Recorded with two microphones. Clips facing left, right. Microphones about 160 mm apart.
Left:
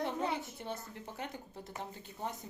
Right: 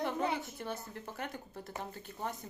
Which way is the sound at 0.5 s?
20° left (ahead or behind).